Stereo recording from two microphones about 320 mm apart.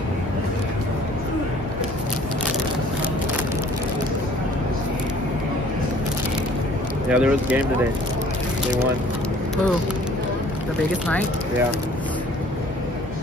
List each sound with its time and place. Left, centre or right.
7.1 s speech: centre